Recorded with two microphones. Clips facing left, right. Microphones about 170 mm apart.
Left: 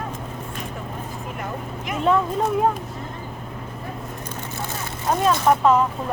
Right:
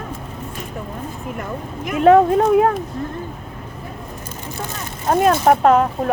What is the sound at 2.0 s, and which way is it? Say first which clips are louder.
Speech: right 9 dB; 65° right (ahead or behind).